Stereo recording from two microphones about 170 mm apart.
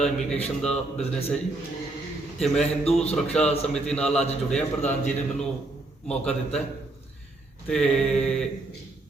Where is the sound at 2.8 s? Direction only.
35° left (ahead or behind).